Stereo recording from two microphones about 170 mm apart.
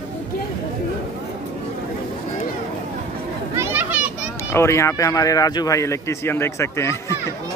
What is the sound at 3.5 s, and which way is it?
Children playing, 10° right (ahead or behind).